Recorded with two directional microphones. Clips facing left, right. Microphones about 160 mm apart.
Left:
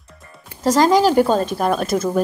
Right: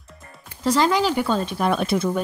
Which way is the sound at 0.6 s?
40° left (ahead or behind).